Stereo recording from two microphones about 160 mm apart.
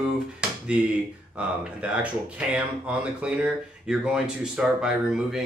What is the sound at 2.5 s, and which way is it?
A man's voice, 5° right (ahead or behind).